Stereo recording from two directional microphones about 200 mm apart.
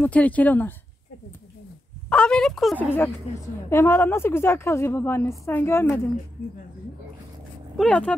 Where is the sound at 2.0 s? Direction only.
5° left (ahead or behind).